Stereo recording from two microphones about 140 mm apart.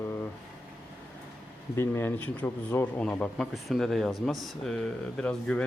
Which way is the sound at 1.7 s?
15° left (ahead or behind).